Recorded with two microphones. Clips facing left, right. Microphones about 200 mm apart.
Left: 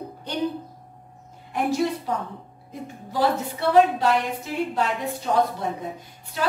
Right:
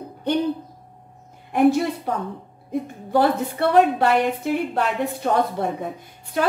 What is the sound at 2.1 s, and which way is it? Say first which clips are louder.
A woman's voice: right 2 dB; 60° right (ahead or behind).